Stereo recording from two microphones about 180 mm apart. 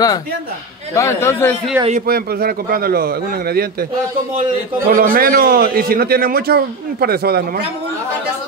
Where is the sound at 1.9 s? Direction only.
50° right (ahead or behind).